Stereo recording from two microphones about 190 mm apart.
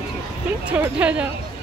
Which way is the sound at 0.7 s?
5° right (ahead or behind).